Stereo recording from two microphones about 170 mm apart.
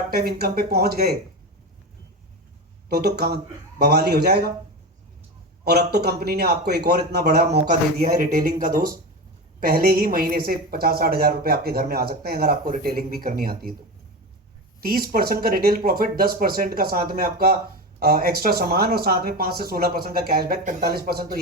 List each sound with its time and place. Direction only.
0.1 s speech: 65° right (ahead or behind)
2.9 s speech: 70° right (ahead or behind)
5.6 s a woman's voice: 70° right (ahead or behind)
14.8 s a woman's voice: 60° right (ahead or behind)